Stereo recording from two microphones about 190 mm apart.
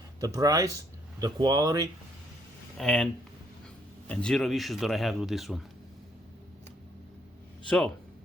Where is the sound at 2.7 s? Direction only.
5° left (ahead or behind).